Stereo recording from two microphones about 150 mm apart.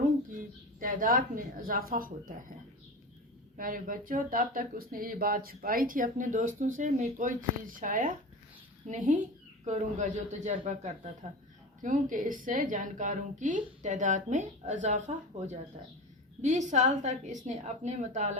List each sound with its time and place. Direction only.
0.8 s speech: 65° right (ahead or behind)
3.6 s a woman's voice: 65° right (ahead or behind); by 18.3 s 50° right (ahead or behind)